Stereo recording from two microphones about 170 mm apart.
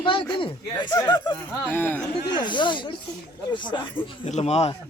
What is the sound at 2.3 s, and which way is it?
Speech, 25° left (ahead or behind).